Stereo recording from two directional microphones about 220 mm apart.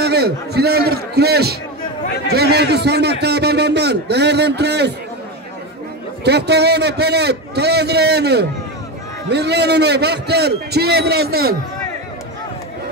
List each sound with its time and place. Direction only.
0.0 s a man's voice: 45° right (ahead or behind)
6.2 s a man's voice: 50° right (ahead or behind)